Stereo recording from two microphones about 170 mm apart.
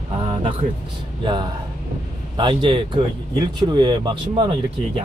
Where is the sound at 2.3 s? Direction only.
30° right (ahead or behind).